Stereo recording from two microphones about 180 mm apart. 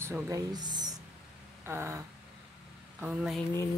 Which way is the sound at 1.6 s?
15° right (ahead or behind).